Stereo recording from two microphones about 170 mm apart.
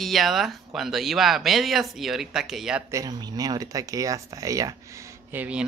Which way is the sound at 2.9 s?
20° right (ahead or behind).